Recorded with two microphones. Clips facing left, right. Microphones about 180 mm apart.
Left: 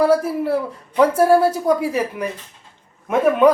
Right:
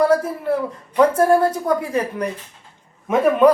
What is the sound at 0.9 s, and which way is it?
A woman's voice, 10° left (ahead or behind).